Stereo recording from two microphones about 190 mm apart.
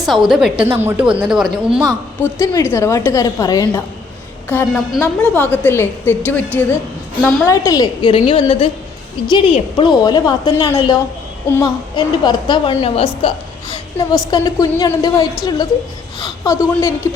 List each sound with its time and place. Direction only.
0.0 s speech: centre (ahead or behind)
2.2 s a woman's voice: 15° left (ahead or behind)
4.4 s a woman's voice: 10° left (ahead or behind)
7.4 s a woman's voice: 20° left (ahead or behind)